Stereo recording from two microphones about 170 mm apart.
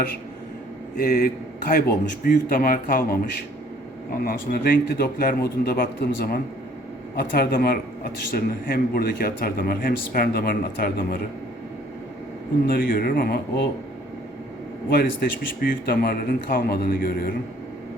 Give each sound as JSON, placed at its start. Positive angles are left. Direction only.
{"t": 0.9, "sound": "speech", "side_deg": 60}
{"t": 12.6, "sound": "speech", "side_deg": 60}
{"t": 14.9, "sound": "speech", "side_deg": 60}